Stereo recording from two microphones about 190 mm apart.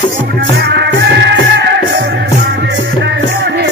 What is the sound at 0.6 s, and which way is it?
Music, 60° right (ahead or behind).